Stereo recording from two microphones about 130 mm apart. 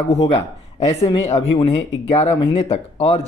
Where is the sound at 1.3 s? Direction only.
45° left (ahead or behind).